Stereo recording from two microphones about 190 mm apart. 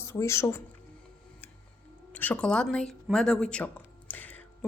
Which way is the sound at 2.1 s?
10° left (ahead or behind).